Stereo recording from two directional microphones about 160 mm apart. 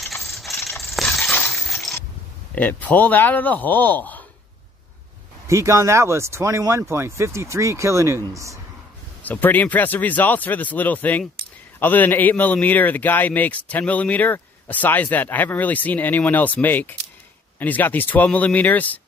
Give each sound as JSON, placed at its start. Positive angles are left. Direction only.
{"t": 0.0, "sound": "rattle", "side_deg": 0}
{"t": 0.8, "sound": "a sound", "side_deg": 0}
{"t": 2.5, "sound": "a man's voice", "side_deg": 10}
{"t": 5.5, "sound": "speech", "side_deg": -20}
{"t": 9.2, "sound": "a man's voice", "side_deg": 10}